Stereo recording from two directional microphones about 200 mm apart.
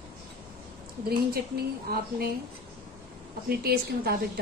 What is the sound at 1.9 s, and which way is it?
Speech, 50° right (ahead or behind).